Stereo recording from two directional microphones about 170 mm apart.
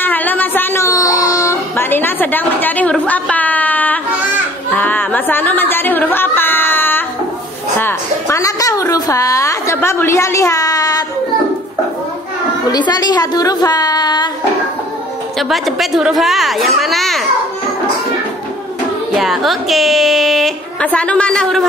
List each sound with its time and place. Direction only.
0.0 s a sound: 10° left (ahead or behind)
4.7 s music: 10° left (ahead or behind)
7.8 s a woman's voice: 15° left (ahead or behind)
12.7 s a woman's voice: 25° left (ahead or behind)
15.3 s a woman's voice: centre (ahead or behind)
19.1 s a woman's voice: centre (ahead or behind)